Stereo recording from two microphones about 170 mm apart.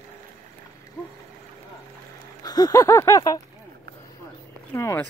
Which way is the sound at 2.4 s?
20° left (ahead or behind).